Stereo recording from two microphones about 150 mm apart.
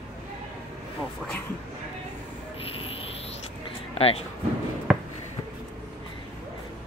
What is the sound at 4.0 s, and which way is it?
Speech, 40° left (ahead or behind).